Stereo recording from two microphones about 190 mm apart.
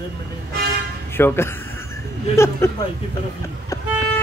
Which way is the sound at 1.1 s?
10° left (ahead or behind).